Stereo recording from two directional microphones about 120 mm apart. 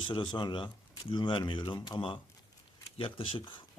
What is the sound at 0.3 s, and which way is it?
A man's voice, 40° left (ahead or behind).